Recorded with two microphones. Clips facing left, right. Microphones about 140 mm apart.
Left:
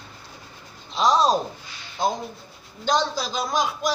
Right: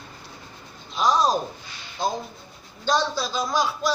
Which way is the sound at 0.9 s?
25° left (ahead or behind).